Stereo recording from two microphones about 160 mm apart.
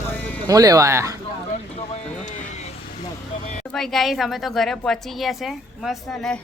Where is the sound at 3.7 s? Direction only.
Centre (ahead or behind).